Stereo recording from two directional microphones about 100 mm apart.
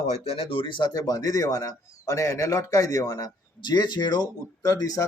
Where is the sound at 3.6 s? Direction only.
45° left (ahead or behind).